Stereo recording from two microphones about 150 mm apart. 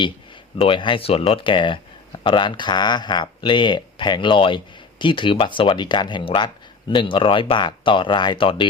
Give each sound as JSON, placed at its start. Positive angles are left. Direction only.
{"t": 0.6, "sound": "speech", "side_deg": 35}